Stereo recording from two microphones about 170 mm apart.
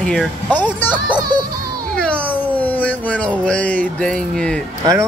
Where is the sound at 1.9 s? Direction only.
5° left (ahead or behind).